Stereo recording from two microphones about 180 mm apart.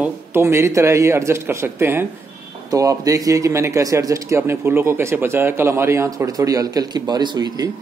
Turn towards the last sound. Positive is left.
turn(degrees=-25)  # may be behind; listen again after turning